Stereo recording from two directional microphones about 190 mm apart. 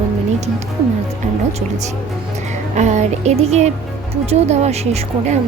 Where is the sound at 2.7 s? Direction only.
35° right (ahead or behind).